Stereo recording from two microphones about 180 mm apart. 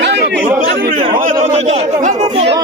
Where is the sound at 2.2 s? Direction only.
30° right (ahead or behind).